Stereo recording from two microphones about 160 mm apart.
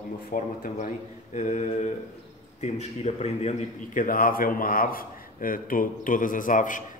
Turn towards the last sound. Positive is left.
turn(degrees=55)  # may be behind; listen again after turning